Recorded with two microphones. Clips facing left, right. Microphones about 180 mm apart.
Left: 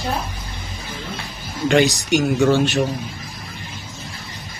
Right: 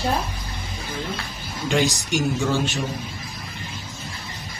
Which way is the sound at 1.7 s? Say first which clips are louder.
Left 6 dB; 65° left (ahead or behind).